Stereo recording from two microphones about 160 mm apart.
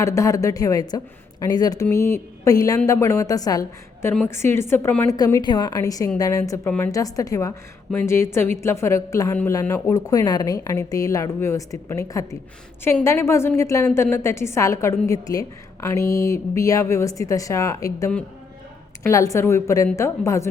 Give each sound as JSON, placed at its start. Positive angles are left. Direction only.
{"t": 0.0, "sound": "a woman's voice", "side_deg": 20}